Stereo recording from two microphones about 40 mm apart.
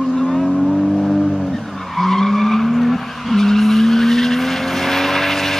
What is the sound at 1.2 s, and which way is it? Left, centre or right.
Vehicle, centre.